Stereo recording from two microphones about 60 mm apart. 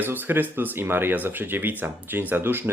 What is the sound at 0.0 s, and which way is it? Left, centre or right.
Speech, right.